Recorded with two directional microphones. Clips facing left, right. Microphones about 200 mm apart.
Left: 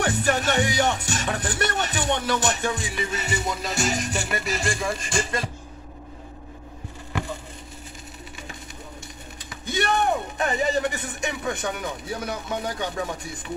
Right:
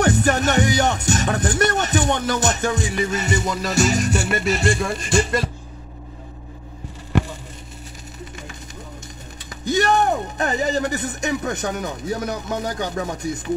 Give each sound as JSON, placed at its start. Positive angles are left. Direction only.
{"t": 0.0, "sound": "music", "side_deg": -45}
{"t": 3.6, "sound": "music", "side_deg": -75}
{"t": 9.5, "sound": "speech", "side_deg": -40}